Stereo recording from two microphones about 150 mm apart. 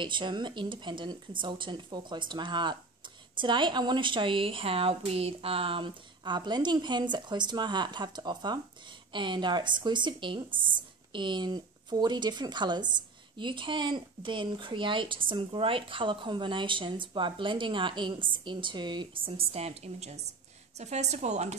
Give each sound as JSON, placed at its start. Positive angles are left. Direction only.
{"t": 0.0, "sound": "a woman's voice", "side_deg": -30}